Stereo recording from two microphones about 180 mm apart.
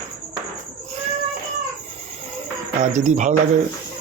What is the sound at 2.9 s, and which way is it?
Speech, 40° right (ahead or behind).